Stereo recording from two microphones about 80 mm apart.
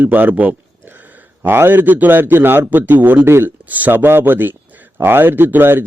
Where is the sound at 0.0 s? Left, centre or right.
Right.